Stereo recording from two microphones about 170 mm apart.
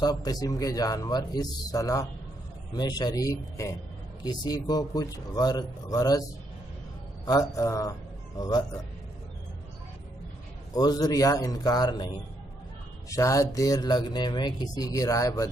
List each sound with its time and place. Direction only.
0.0 s speech: 25° left (ahead or behind)
7.2 s speech: 20° left (ahead or behind)
10.7 s speech: 20° left (ahead or behind)
13.1 s speech: 20° left (ahead or behind)